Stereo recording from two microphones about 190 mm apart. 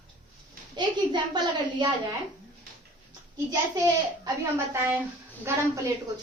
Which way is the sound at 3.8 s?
15° right (ahead or behind).